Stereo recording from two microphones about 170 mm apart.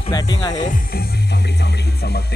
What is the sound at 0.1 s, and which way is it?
Speech, 25° left (ahead or behind).